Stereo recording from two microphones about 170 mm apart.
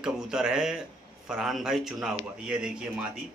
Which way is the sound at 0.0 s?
5° right (ahead or behind).